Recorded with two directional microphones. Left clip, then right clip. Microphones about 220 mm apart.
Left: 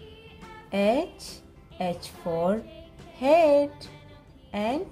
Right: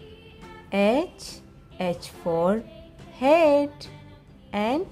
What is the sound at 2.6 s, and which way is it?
Speech, centre (ahead or behind).